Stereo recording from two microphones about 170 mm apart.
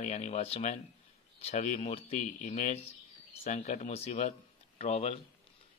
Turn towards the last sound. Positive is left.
turn(degrees=35)  # may be behind; listen again after turning